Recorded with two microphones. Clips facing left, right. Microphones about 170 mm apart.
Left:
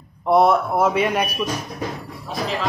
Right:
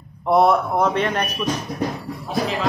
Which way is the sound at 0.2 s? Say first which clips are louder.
Even; centre (ahead or behind).